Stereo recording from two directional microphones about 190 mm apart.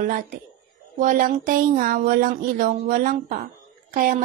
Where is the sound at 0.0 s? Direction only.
45° right (ahead or behind).